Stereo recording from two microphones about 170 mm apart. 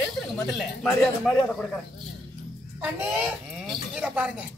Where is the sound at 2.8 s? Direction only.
5° right (ahead or behind).